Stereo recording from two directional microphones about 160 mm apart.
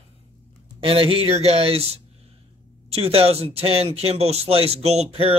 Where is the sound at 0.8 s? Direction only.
35° right (ahead or behind).